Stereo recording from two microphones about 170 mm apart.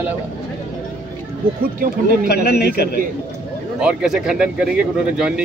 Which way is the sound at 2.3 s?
70° left (ahead or behind).